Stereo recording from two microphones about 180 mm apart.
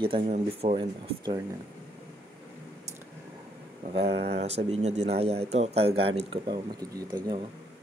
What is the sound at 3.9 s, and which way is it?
Speech, 35° right (ahead or behind).